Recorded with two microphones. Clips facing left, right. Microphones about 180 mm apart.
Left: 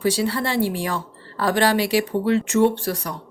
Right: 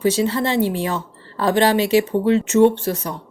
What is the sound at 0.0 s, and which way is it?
Speech, 20° right (ahead or behind).